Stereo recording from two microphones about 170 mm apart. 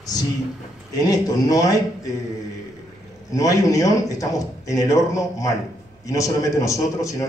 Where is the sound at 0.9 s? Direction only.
20° left (ahead or behind).